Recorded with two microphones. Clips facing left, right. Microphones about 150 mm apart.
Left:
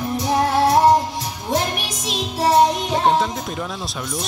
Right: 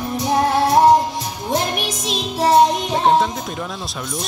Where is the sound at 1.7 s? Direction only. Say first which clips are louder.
Right 3 dB; 10° left (ahead or behind).